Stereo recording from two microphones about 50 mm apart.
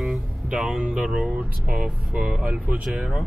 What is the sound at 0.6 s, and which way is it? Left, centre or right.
Speech, centre.